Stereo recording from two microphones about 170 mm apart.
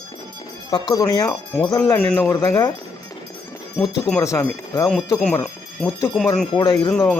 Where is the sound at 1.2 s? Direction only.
5° left (ahead or behind).